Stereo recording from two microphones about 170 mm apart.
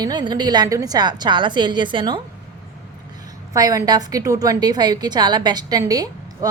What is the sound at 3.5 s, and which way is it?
A woman's voice, 20° right (ahead or behind).